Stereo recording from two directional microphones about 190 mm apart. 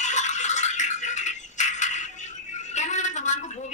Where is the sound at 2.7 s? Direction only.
40° left (ahead or behind).